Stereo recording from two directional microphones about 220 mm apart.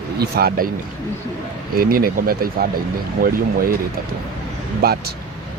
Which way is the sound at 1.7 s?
40° right (ahead or behind).